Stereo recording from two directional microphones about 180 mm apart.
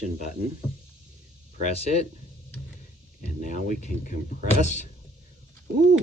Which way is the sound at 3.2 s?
45° left (ahead or behind).